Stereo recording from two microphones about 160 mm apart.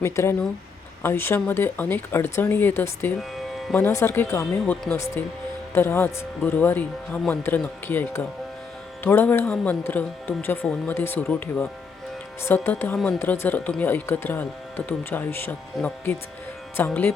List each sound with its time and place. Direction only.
0.0 s speech: 15° left (ahead or behind)
4.6 s speech: 5° left (ahead or behind)